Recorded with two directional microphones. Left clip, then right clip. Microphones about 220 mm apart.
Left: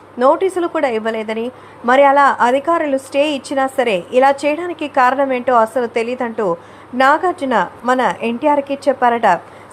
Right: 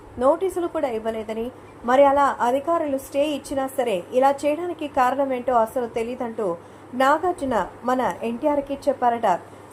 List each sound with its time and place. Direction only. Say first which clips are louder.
0.2 s a woman's voice: left 7 dB; 20° left (ahead or behind)